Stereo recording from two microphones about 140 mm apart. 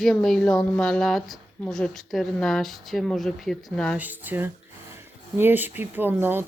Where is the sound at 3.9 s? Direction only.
10° right (ahead or behind).